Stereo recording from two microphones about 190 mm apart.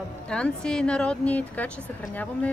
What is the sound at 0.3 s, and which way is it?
A woman's voice, 5° left (ahead or behind).